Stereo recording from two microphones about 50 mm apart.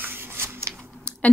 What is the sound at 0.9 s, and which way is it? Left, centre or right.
Typing, centre.